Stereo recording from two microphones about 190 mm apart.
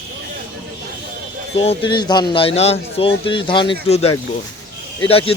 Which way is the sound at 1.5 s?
30° left (ahead or behind).